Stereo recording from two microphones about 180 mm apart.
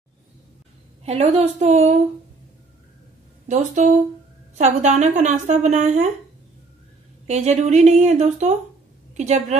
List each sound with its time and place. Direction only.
1.0 s a woman's voice: 35° right (ahead or behind)
3.4 s a woman's voice: 40° right (ahead or behind)
7.2 s a woman's voice: 40° right (ahead or behind)